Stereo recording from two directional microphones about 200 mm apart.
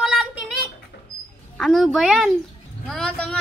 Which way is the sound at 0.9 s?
50° left (ahead or behind).